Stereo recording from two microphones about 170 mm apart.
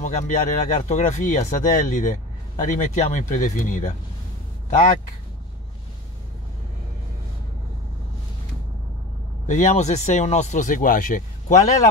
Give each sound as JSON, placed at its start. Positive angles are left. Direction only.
{"t": 0.0, "sound": "speech", "side_deg": 50}
{"t": 9.5, "sound": "speech", "side_deg": 40}